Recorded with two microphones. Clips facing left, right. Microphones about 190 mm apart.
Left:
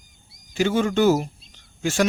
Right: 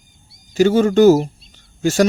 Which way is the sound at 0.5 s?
40° right (ahead or behind).